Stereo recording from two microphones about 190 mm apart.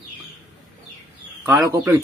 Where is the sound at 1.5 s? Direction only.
20° right (ahead or behind).